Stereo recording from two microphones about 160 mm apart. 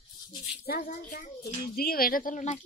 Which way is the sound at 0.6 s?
60° left (ahead or behind).